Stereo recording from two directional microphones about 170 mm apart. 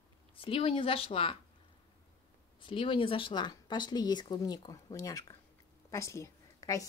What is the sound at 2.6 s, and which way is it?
Speech, 30° left (ahead or behind).